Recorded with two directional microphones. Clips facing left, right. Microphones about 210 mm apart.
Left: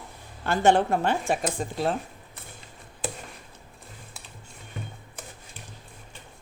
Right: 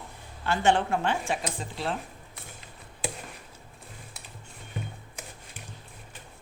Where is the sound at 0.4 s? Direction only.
45° left (ahead or behind).